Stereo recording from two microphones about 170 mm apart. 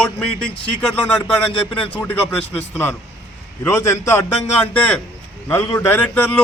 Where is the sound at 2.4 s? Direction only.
35° left (ahead or behind).